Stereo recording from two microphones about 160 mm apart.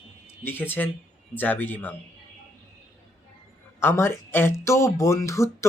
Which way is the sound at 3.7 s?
15° left (ahead or behind).